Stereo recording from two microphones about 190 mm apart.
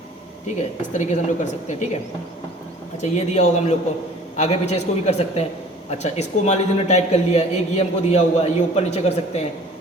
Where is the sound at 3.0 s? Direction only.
35° left (ahead or behind).